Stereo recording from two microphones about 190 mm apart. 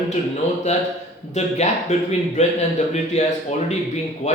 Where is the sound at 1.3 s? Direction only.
35° left (ahead or behind).